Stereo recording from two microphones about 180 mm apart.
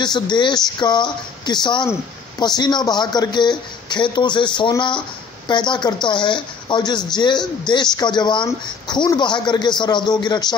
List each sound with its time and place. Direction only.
0.0 s speech: 25° left (ahead or behind)